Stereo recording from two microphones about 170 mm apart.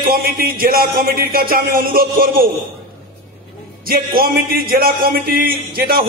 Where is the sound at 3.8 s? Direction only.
60° right (ahead or behind).